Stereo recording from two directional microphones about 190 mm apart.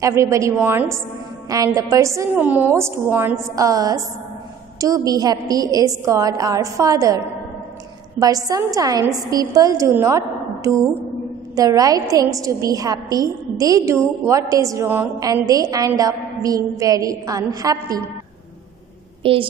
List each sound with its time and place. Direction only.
0.0 s a woman's voice: 15° right (ahead or behind)
19.2 s a woman's voice: 30° right (ahead or behind)